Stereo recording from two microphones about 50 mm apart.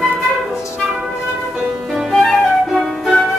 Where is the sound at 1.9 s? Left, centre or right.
Centre.